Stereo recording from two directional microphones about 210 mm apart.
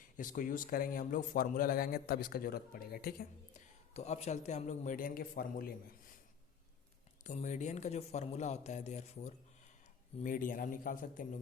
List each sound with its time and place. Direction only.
0.2 s a man's voice: 40° left (ahead or behind)
3.9 s a man's voice: 30° left (ahead or behind)
7.3 s a man's voice: 35° left (ahead or behind)